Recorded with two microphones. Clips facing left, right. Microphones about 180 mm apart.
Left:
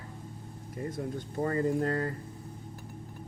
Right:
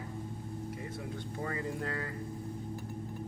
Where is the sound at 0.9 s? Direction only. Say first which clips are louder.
Left 5 dB; 40° left (ahead or behind).